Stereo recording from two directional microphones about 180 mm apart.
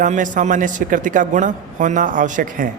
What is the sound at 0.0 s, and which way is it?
Speech, 45° right (ahead or behind).